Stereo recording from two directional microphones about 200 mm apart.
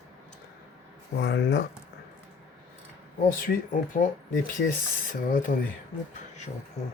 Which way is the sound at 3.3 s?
45° left (ahead or behind).